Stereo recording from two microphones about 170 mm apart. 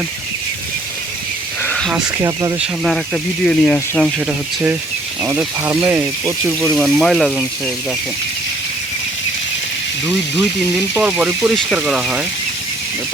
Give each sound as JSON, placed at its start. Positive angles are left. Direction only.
{"t": 1.6, "sound": "snake", "side_deg": 5}
{"t": 1.9, "sound": "speech", "side_deg": -20}
{"t": 2.6, "sound": "speech", "side_deg": 0}
{"t": 4.3, "sound": "speech", "side_deg": -10}
{"t": 6.6, "sound": "speech", "side_deg": 0}
{"t": 10.9, "sound": "speech", "side_deg": -5}